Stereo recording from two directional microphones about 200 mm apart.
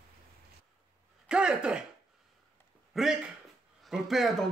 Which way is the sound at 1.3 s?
5° right (ahead or behind).